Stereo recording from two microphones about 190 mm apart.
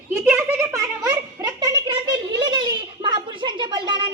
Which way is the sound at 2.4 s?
25° right (ahead or behind).